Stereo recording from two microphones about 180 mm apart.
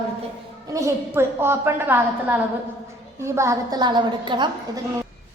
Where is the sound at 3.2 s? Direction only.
15° right (ahead or behind).